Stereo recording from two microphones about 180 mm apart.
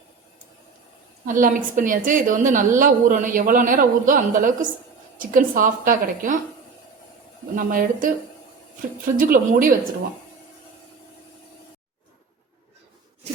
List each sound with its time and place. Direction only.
1.3 s a woman's voice: 45° right (ahead or behind)
7.5 s a woman's voice: 50° right (ahead or behind)
9.1 s a woman's voice: 50° right (ahead or behind)